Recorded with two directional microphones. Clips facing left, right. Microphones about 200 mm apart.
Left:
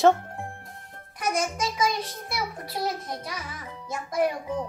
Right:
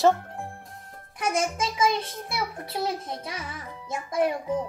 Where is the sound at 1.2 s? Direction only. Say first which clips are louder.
Right 1 dB; 25° right (ahead or behind).